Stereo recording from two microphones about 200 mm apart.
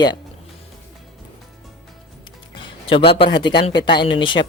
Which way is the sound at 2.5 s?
25° left (ahead or behind).